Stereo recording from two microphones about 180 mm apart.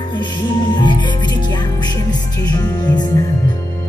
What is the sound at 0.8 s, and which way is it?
Music, 25° left (ahead or behind).